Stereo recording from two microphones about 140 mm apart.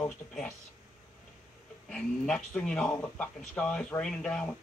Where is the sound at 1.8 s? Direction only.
5° left (ahead or behind).